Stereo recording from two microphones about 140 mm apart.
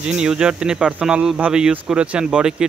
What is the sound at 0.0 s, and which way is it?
Speech, 5° right (ahead or behind).